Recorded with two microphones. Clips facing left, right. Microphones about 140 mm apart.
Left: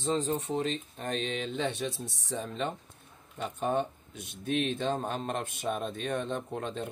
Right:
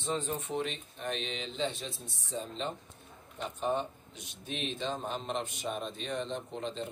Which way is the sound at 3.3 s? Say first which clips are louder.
Left 3 dB; 55° left (ahead or behind).